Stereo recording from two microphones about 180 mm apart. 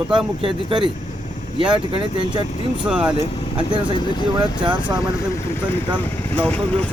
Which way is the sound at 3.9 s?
25° left (ahead or behind).